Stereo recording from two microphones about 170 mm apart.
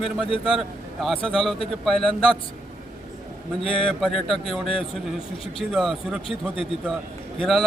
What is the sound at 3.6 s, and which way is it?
Speech, 30° left (ahead or behind).